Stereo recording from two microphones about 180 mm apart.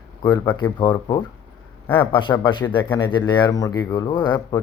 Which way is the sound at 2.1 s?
25° left (ahead or behind).